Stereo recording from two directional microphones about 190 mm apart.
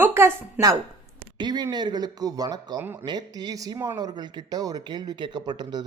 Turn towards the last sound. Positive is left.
turn(degrees=-20)  # may be behind; listen again after turning